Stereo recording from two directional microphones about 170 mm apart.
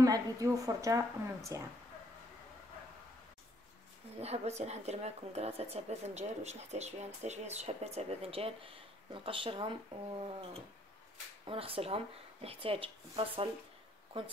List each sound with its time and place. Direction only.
0.0 s a woman's voice: 20° right (ahead or behind)
4.2 s speech: 40° right (ahead or behind)
11.4 s speech: 35° right (ahead or behind)